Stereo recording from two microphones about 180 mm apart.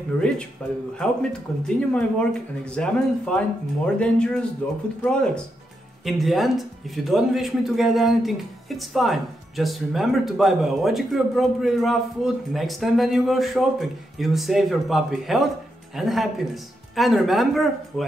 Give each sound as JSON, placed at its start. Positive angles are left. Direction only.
{"t": 0.6, "sound": "speech", "side_deg": 5}
{"t": 1.8, "sound": "speech", "side_deg": 5}